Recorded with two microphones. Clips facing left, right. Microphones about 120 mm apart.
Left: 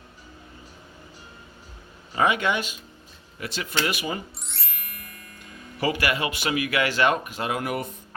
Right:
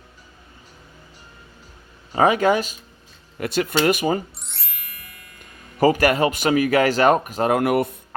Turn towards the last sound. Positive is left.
turn(degrees=-65)  # may be behind; listen again after turning